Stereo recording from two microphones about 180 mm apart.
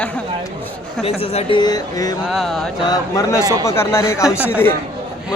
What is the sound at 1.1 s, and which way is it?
Speech, 30° left (ahead or behind).